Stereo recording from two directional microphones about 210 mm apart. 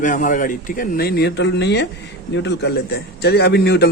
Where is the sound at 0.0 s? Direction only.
40° left (ahead or behind).